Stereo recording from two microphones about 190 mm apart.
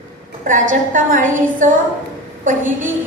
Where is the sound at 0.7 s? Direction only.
45° right (ahead or behind).